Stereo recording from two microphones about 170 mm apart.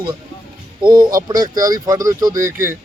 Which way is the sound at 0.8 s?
25° right (ahead or behind).